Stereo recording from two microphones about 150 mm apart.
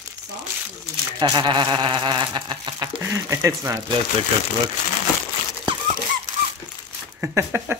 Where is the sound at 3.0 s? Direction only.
20° right (ahead or behind).